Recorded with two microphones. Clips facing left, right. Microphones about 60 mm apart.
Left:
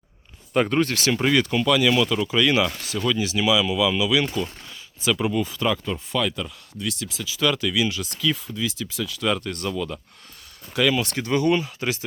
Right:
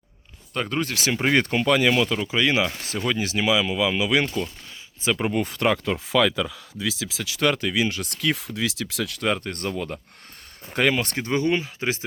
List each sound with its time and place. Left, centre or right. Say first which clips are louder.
0.5 s speech: left 6 dB; centre
0.8 s speech: left 5 dB; centre
1.0 s speech: left 2 dB; centre
1.3 s speech: right 1 dB; right
2.0 s speech: left 1 dB; centre
2.8 s speech: left 1 dB; right
5.3 s speech: right 1 dB; right
7.4 s speech: even; right
9.2 s speech: left 1 dB; right